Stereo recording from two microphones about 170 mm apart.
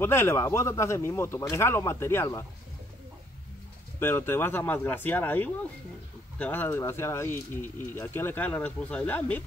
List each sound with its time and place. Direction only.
0.0 s speech: 15° left (ahead or behind)
4.0 s speech: 15° left (ahead or behind)